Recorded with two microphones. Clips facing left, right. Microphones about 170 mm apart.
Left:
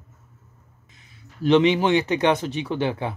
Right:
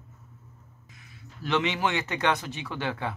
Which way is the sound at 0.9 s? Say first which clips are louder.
Right 1 dB; 20° left (ahead or behind).